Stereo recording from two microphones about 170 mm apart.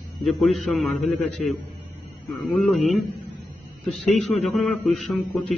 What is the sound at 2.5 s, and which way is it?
A man's voice, centre (ahead or behind).